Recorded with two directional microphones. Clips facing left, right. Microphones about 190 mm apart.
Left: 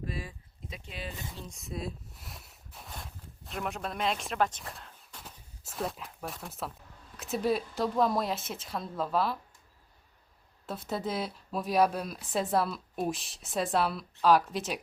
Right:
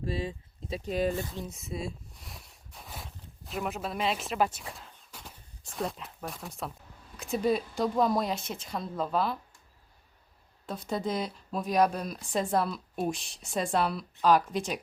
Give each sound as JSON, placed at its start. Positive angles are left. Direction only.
{"t": 0.0, "sound": "a sound", "side_deg": -25}
{"t": 0.8, "sound": "speech", "side_deg": -45}
{"t": 1.5, "sound": "speech", "side_deg": 0}
{"t": 10.7, "sound": "speech", "side_deg": 5}